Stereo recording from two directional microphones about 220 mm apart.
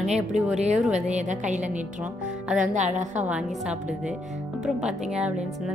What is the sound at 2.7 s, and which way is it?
Speech, 35° right (ahead or behind).